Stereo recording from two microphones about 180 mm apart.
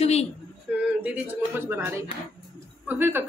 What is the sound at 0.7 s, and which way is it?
Speech, 10° right (ahead or behind).